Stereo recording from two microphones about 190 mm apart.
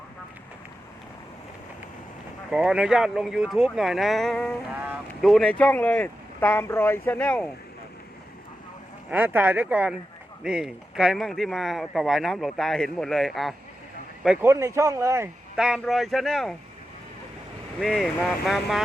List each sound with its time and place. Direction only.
2.5 s speech: 5° right (ahead or behind)
9.0 s speech: 10° right (ahead or behind)
14.4 s speech: 15° right (ahead or behind)
15.5 s speech: 5° right (ahead or behind)
17.7 s speech: centre (ahead or behind)